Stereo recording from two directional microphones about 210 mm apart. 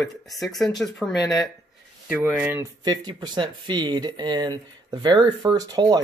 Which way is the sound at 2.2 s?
5° right (ahead or behind).